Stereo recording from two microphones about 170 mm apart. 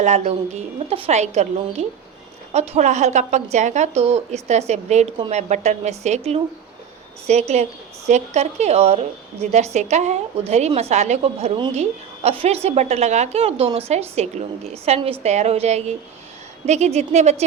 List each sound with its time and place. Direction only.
0.0 s a woman's voice: 40° right (ahead or behind)